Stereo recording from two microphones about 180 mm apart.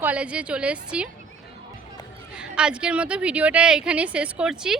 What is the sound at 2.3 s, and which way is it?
A woman's voice, 5° right (ahead or behind).